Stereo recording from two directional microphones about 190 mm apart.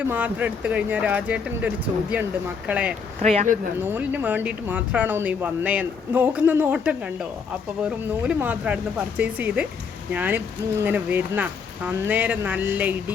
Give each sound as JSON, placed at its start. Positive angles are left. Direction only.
{"t": 0.1, "sound": "speech", "side_deg": -10}
{"t": 3.2, "sound": "speech", "side_deg": -40}
{"t": 3.8, "sound": "speech", "side_deg": -10}